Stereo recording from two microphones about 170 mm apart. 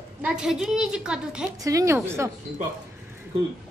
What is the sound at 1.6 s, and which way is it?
Speech, 20° right (ahead or behind).